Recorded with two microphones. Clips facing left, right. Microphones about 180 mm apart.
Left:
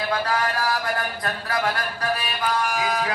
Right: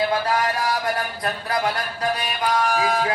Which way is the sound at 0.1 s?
25° right (ahead or behind).